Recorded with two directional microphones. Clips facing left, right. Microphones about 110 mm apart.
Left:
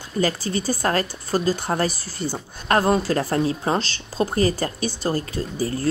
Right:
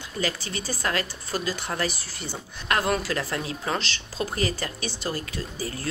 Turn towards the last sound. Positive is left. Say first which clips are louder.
# left 7 dB
turn(degrees=35)  # may be behind; listen again after turning